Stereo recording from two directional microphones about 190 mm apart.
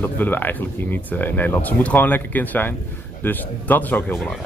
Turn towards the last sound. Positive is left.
turn(degrees=5)  # may be behind; listen again after turning